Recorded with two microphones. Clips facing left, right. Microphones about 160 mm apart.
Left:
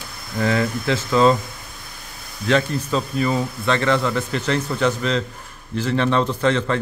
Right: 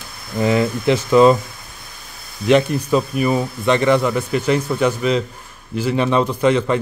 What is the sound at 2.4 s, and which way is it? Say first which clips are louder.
A man's voice: right 5 dB; 15° right (ahead or behind).